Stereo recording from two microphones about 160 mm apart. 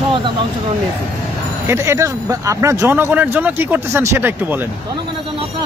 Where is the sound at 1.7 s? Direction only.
15° right (ahead or behind).